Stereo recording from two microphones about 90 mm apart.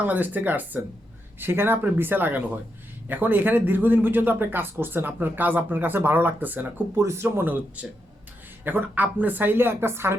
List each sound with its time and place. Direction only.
0.0 s speech: 20° right (ahead or behind)
7.0 s speech: 35° right (ahead or behind)